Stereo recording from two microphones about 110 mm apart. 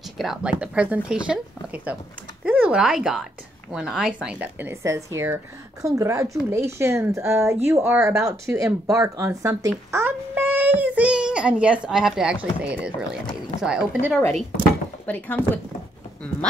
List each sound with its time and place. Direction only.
0.2 s speech: 5° right (ahead or behind)
15.0 s speech: 15° left (ahead or behind)